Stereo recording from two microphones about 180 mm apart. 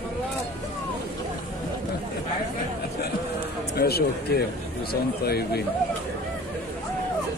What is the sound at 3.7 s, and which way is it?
Speech, 60° left (ahead or behind).